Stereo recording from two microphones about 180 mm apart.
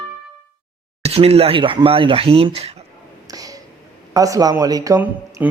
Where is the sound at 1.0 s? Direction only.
35° right (ahead or behind).